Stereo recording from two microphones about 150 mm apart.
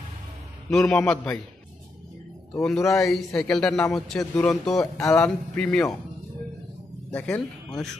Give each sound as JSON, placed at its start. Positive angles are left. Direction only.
{"t": 0.7, "sound": "a man's voice", "side_deg": 5}
{"t": 2.6, "sound": "a man's voice", "side_deg": 0}
{"t": 3.3, "sound": "a man's voice", "side_deg": 15}
{"t": 7.1, "sound": "speech", "side_deg": 10}